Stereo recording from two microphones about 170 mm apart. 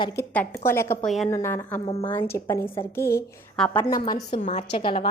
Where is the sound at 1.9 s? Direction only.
35° left (ahead or behind).